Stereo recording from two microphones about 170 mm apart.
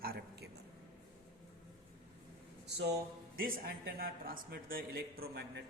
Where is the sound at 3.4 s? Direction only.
60° right (ahead or behind).